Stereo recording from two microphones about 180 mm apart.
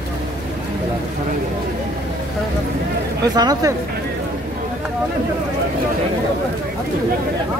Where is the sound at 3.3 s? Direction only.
20° right (ahead or behind).